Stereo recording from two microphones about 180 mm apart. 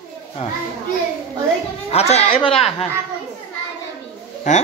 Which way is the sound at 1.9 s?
35° left (ahead or behind).